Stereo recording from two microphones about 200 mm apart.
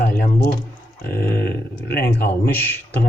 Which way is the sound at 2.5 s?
10° left (ahead or behind).